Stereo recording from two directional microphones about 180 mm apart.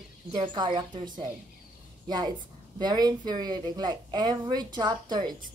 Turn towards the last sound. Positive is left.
turn(degrees=-25)  # may be behind; listen again after turning